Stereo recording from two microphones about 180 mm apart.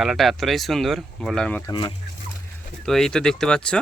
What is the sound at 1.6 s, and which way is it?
Speech, 20° left (ahead or behind).